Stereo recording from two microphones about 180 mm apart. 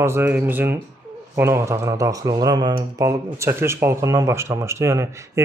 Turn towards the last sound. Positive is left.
turn(degrees=-15)  # may be behind; listen again after turning